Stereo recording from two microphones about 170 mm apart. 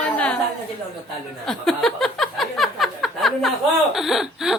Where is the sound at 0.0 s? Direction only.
5° left (ahead or behind).